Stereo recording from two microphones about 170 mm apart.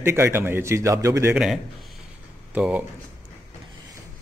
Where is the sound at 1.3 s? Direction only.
5° right (ahead or behind).